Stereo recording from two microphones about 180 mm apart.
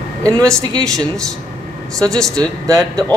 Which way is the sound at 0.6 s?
20° right (ahead or behind).